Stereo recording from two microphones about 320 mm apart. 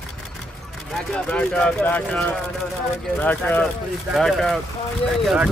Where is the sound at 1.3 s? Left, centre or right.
Centre.